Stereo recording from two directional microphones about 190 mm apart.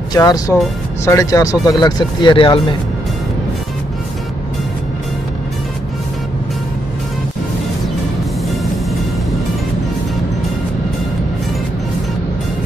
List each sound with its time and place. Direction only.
0.1 s speech: 20° left (ahead or behind)